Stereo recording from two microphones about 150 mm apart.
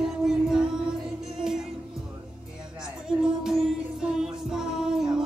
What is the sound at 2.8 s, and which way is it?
Music, 5° right (ahead or behind).